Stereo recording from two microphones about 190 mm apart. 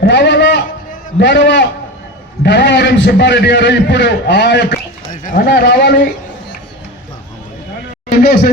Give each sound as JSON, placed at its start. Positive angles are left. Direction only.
{"t": 0.0, "sound": "a man's voice", "side_deg": 70}
{"t": 5.1, "sound": "speech", "side_deg": 40}
{"t": 5.5, "sound": "a man's voice", "side_deg": 60}
{"t": 8.2, "sound": "a man's voice", "side_deg": 55}